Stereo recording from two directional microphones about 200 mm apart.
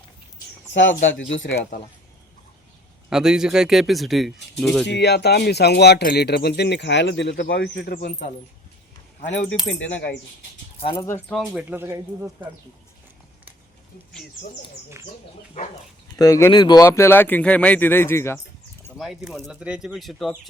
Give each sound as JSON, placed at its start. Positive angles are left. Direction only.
{"t": 0.7, "sound": "speech", "side_deg": 65}
{"t": 3.1, "sound": "speech", "side_deg": -5}
{"t": 4.9, "sound": "speech", "side_deg": 60}
{"t": 9.6, "sound": "speech", "side_deg": 60}
{"t": 10.9, "sound": "speech", "side_deg": 10}
{"t": 11.3, "sound": "speech", "side_deg": -5}
{"t": 16.1, "sound": "speech", "side_deg": 15}
{"t": 18.9, "sound": "speech", "side_deg": 0}